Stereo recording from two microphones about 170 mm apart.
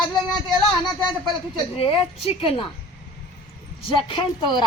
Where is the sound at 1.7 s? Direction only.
30° left (ahead or behind).